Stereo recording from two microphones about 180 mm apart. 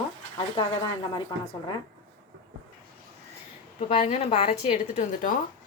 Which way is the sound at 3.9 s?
30° left (ahead or behind).